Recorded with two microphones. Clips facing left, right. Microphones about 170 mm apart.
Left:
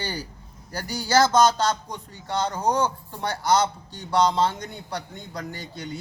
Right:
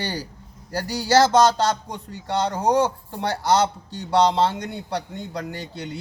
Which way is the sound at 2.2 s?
30° right (ahead or behind).